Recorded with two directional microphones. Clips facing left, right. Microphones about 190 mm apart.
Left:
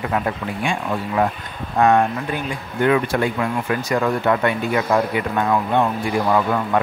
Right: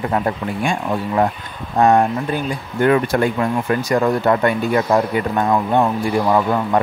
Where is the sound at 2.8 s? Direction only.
45° right (ahead or behind).